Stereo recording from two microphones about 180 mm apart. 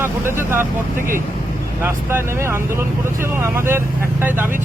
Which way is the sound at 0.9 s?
50° right (ahead or behind).